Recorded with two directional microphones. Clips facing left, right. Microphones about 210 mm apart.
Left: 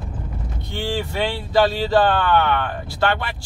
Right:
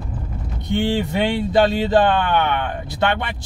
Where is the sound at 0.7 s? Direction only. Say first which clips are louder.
Right 6 dB; 20° right (ahead or behind).